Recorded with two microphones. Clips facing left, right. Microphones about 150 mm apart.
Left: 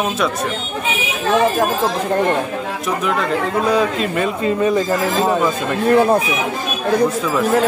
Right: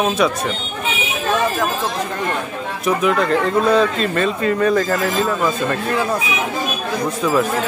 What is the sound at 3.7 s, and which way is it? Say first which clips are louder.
A man's voice: right 1 dB; 10° left (ahead or behind).